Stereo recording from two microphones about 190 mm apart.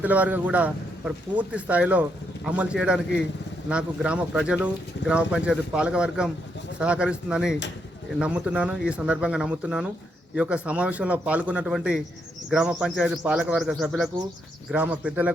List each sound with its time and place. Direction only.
0.0 s speech: 10° right (ahead or behind)